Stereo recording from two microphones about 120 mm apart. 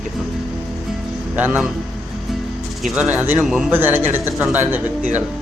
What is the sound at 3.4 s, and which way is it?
Speech, 5° right (ahead or behind).